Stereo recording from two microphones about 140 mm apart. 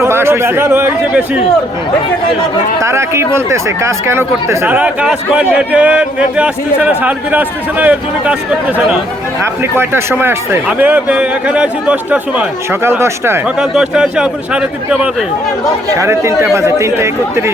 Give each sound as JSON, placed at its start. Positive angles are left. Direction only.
{"t": 0.0, "sound": "speech", "side_deg": -15}
{"t": 2.8, "sound": "speech", "side_deg": -20}
{"t": 13.6, "sound": "a man's voice", "side_deg": -5}
{"t": 16.0, "sound": "speech", "side_deg": -20}